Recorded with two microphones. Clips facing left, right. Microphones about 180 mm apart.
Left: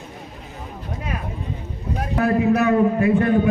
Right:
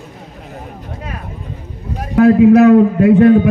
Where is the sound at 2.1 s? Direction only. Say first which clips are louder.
Right 11 dB; 65° right (ahead or behind).